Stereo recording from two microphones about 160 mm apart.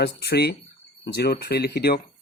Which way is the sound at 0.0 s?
85° left.